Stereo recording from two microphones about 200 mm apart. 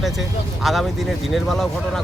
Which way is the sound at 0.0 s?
Centre (ahead or behind).